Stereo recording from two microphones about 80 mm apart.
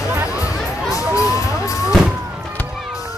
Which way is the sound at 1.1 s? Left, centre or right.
Left.